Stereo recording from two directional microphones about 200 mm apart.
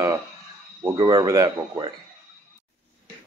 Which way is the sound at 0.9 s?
20° right (ahead or behind).